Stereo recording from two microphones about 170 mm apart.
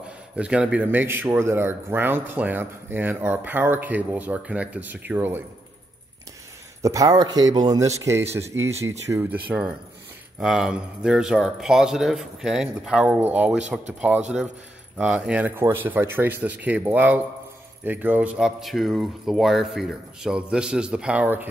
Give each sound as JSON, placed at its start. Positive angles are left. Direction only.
{"t": 0.4, "sound": "speech", "side_deg": -5}
{"t": 6.8, "sound": "speech", "side_deg": -20}